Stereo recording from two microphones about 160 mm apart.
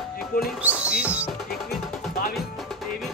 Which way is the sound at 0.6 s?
10° right (ahead or behind).